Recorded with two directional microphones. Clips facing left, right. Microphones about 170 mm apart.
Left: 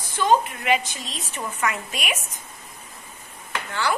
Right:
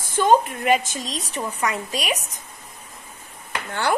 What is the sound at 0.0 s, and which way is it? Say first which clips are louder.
A woman's voice: right 3 dB; 45° right (ahead or behind).